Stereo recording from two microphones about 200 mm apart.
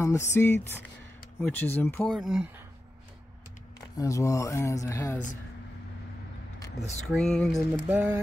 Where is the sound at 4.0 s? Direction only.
15° left (ahead or behind).